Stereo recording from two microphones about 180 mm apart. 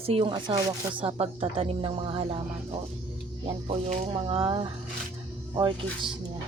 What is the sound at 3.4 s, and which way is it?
Speech, 35° right (ahead or behind).